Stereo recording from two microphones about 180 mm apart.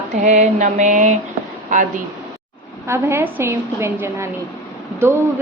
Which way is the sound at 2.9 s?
15° right (ahead or behind).